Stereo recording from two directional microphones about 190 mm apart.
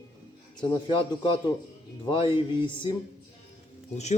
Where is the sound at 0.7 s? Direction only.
25° left (ahead or behind).